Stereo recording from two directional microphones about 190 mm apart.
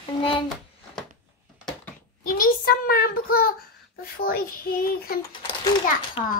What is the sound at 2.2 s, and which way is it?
Child singing, 45° left (ahead or behind).